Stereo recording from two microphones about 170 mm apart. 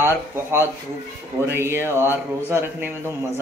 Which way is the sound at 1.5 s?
15° right (ahead or behind).